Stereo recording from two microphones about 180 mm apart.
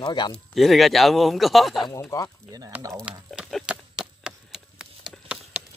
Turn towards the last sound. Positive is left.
turn(degrees=-5)  # may be behind; listen again after turning